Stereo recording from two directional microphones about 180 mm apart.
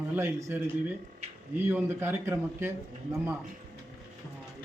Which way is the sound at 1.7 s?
10° right (ahead or behind).